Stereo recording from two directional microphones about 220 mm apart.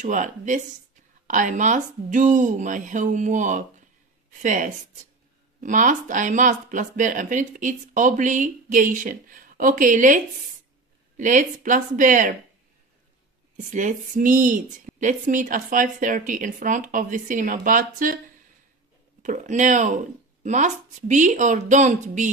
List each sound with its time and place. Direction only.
0.0 s speech: 35° right (ahead or behind)
13.6 s speech: 35° right (ahead or behind)
19.2 s speech: 35° right (ahead or behind)